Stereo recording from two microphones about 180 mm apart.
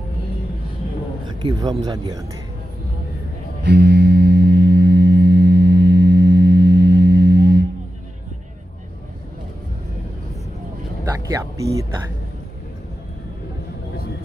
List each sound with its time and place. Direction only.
1.2 s a sound: 25° right (ahead or behind)
1.9 s a man's voice: 25° right (ahead or behind)
3.6 s music: 70° right (ahead or behind)
11.1 s speech: 15° right (ahead or behind)